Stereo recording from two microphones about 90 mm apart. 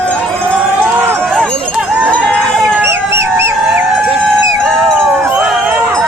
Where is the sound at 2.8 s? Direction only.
30° right (ahead or behind).